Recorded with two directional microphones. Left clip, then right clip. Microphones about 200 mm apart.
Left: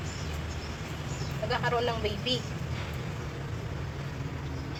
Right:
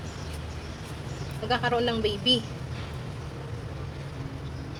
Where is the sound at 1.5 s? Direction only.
35° right (ahead or behind).